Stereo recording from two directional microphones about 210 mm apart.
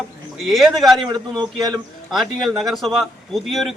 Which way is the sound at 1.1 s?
20° right (ahead or behind).